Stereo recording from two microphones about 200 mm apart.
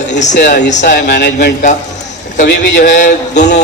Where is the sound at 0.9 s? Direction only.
55° left (ahead or behind).